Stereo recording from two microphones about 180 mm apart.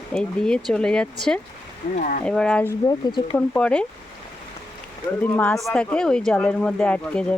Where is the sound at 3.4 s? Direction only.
10° left (ahead or behind).